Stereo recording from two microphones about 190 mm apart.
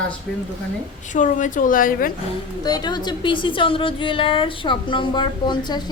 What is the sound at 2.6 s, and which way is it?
A woman's voice, 20° left (ahead or behind).